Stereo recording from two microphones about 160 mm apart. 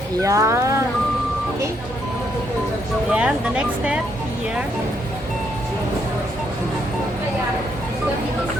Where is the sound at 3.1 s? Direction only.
5° right (ahead or behind).